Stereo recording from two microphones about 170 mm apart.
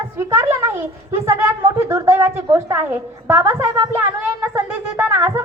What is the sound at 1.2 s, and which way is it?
A woman's voice, 15° right (ahead or behind).